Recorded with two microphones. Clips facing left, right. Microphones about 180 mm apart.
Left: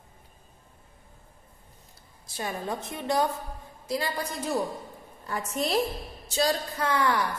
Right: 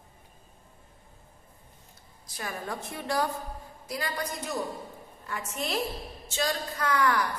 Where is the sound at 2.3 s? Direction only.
25° left (ahead or behind).